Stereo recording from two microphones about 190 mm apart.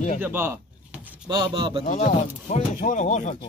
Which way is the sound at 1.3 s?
20° right (ahead or behind).